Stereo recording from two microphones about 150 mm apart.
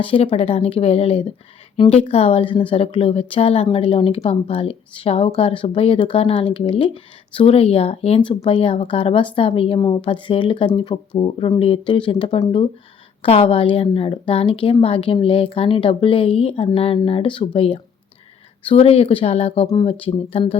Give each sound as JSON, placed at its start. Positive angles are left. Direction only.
{"t": 0.0, "sound": "a woman's voice", "side_deg": 35}